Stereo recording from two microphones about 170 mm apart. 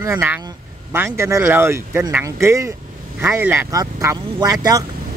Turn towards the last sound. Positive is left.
turn(degrees=-20)  # may be behind; listen again after turning